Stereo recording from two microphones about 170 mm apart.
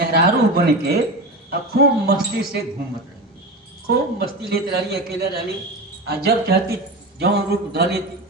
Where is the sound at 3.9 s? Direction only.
65° right (ahead or behind).